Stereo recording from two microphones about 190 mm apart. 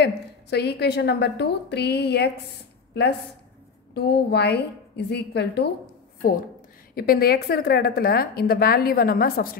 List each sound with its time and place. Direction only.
0.0 s a woman's voice: 60° left (ahead or behind)
6.2 s a woman's voice: 50° left (ahead or behind)